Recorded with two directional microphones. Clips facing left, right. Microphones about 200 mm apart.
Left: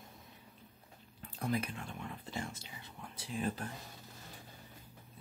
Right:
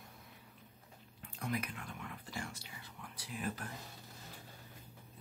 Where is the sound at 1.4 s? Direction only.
30° left (ahead or behind).